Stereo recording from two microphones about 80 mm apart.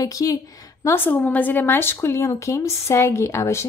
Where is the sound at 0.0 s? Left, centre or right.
Left.